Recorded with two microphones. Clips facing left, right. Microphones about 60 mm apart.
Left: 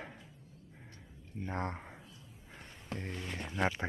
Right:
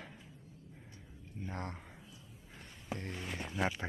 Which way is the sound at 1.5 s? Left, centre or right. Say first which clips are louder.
Left 6 dB; left.